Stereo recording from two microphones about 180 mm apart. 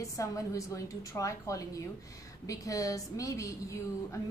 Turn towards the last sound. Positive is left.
turn(degrees=15)  # may be behind; listen again after turning